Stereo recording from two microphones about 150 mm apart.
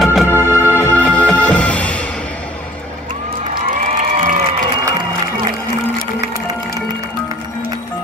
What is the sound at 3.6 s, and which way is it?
Applause, 55° right (ahead or behind).